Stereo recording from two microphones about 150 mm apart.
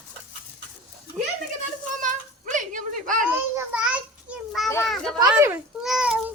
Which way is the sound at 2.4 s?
60° right (ahead or behind).